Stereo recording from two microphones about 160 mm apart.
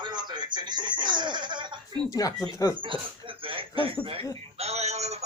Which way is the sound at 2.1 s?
20° left (ahead or behind).